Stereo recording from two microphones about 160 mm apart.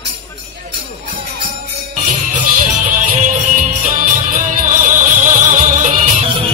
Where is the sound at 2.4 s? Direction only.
55° right (ahead or behind).